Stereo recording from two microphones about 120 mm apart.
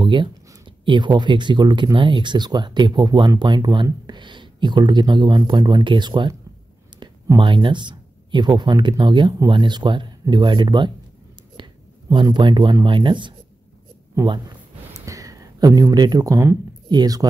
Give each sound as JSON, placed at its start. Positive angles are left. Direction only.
{"t": 0.0, "sound": "speech", "side_deg": -40}
{"t": 7.0, "sound": "a sound", "side_deg": -40}
{"t": 7.3, "sound": "speech", "side_deg": -40}
{"t": 11.6, "sound": "whispering", "side_deg": -40}
{"t": 12.1, "sound": "speech", "side_deg": -40}
{"t": 15.0, "sound": "speech", "side_deg": -30}